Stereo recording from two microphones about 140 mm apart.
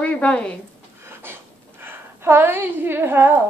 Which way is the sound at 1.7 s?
15° right (ahead or behind).